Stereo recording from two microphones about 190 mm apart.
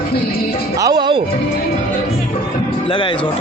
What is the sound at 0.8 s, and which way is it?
Speech, 25° right (ahead or behind).